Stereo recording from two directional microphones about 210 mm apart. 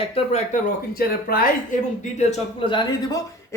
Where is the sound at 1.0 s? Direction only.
45° left (ahead or behind).